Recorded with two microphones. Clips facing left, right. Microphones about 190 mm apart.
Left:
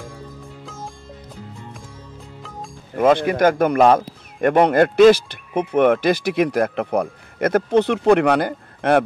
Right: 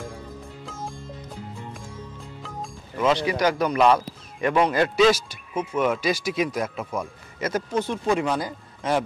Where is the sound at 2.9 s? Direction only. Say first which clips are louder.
Left 6 dB; 50° left (ahead or behind).